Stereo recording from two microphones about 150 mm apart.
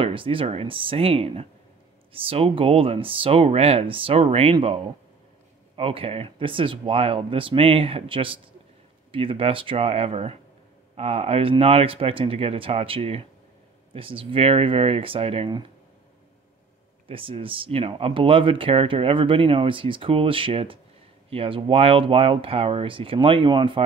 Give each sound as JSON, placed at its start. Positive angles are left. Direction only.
{"t": 0.0, "sound": "speech", "side_deg": -35}
{"t": 5.8, "sound": "speech", "side_deg": -40}
{"t": 17.1, "sound": "speech", "side_deg": -35}